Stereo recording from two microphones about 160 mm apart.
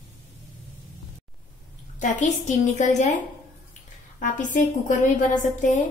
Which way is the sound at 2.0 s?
50° left (ahead or behind).